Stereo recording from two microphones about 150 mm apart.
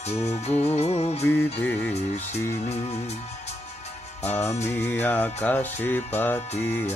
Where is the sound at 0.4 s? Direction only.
45° left (ahead or behind).